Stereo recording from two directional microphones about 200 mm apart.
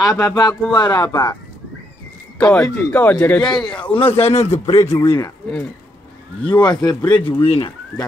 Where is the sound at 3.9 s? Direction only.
30° left (ahead or behind).